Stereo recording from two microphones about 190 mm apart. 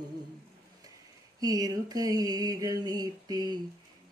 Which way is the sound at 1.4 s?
20° right (ahead or behind).